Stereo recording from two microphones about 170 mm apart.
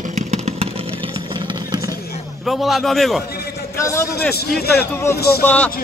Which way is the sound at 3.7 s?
15° left (ahead or behind).